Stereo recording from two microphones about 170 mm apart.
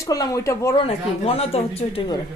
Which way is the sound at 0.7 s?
35° left (ahead or behind).